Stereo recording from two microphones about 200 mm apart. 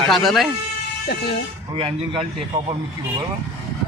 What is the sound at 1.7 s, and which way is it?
Speech, 25° right (ahead or behind).